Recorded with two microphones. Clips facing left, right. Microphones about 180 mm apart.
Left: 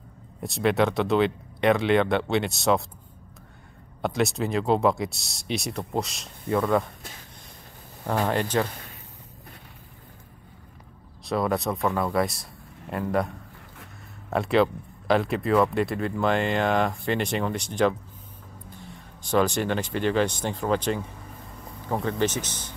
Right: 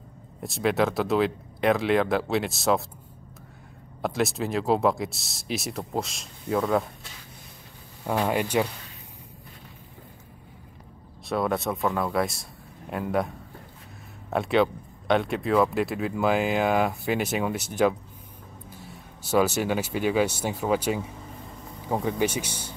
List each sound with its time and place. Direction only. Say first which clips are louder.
0.4 s speech: left 1 dB; centre (ahead or behind)
4.0 s speech: left 1 dB; centre (ahead or behind)
8.1 s speech: even; 10° right (ahead or behind)
11.2 s speech: left 1 dB; centre (ahead or behind)
14.3 s speech: left 1 dB; centre (ahead or behind)